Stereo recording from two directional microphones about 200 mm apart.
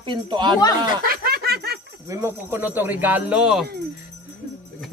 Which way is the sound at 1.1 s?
50° right (ahead or behind).